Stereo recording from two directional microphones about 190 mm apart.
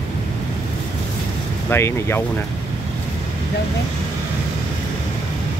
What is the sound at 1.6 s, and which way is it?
Speech, 15° left (ahead or behind).